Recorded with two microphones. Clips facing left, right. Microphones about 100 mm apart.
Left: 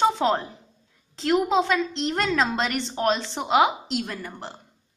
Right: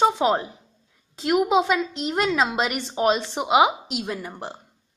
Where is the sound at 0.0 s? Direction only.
10° right (ahead or behind).